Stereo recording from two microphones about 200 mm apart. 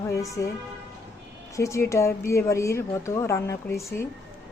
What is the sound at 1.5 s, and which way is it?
A woman's voice, 15° left (ahead or behind).